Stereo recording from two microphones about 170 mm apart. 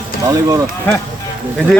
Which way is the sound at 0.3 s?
20° right (ahead or behind).